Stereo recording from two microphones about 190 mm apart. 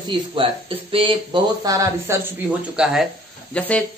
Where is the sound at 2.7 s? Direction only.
5° right (ahead or behind).